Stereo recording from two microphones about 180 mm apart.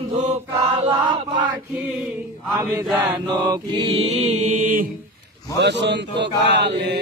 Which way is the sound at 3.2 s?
25° right (ahead or behind).